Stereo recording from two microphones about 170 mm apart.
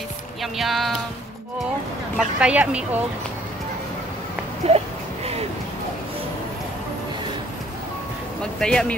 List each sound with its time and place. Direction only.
0.4 s speech: centre (ahead or behind)
2.1 s speech: 5° right (ahead or behind)
4.6 s a sound: 35° right (ahead or behind)
8.4 s speech: 5° left (ahead or behind)